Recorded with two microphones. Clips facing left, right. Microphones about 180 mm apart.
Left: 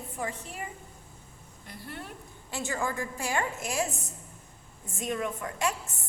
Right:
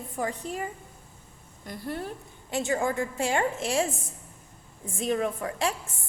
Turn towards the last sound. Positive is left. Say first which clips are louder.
# right 2 dB
turn(degrees=-30)  # may be behind; listen again after turning